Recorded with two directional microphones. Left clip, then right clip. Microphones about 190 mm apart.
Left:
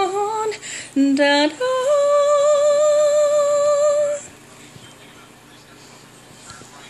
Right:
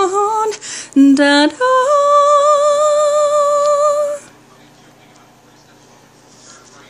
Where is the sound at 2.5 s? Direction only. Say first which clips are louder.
Right 3 dB; 50° right (ahead or behind).